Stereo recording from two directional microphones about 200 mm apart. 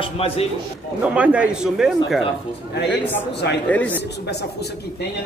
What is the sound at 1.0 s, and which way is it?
A man's voice, 5° right (ahead or behind).